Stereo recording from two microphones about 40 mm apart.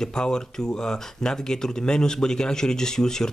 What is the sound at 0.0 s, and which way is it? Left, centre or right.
Speech, centre.